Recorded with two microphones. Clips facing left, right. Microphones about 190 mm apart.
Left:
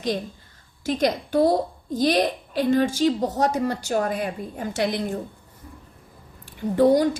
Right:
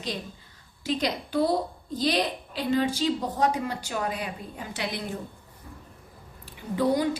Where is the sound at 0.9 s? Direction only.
50° left (ahead or behind).